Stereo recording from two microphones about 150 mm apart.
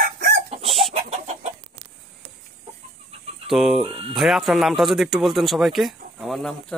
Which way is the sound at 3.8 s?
40° right (ahead or behind).